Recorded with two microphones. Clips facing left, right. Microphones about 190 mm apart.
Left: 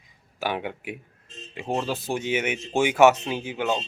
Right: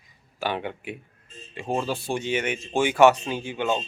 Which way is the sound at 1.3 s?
80° left.